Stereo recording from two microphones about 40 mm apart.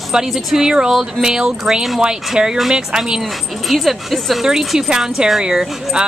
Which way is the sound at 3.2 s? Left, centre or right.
Centre.